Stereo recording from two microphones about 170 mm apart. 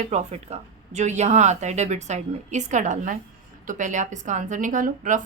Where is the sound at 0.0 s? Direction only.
40° right (ahead or behind).